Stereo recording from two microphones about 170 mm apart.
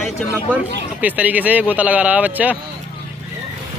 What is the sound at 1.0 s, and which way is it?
Speech, 10° right (ahead or behind).